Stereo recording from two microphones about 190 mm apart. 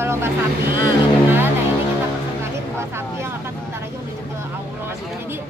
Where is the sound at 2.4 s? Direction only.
15° right (ahead or behind).